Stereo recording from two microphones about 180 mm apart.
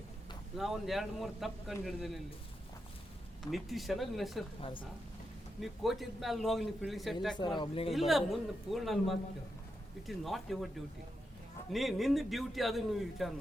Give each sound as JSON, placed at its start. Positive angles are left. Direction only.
{"t": 0.5, "sound": "a man's voice", "side_deg": 0}
{"t": 3.4, "sound": "a man's voice", "side_deg": 0}
{"t": 5.5, "sound": "a man's voice", "side_deg": 0}
{"t": 7.3, "sound": "speech", "side_deg": 25}
{"t": 7.9, "sound": "a man's voice", "side_deg": 0}
{"t": 11.7, "sound": "a man's voice", "side_deg": 0}